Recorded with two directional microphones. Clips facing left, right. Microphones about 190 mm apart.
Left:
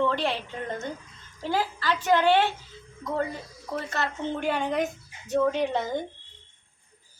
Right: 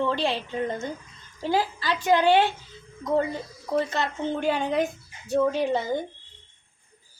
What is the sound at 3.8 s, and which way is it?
A woman's voice, 20° right (ahead or behind).